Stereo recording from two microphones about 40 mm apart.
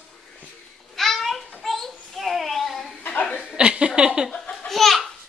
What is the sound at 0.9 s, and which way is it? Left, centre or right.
Child singing, centre.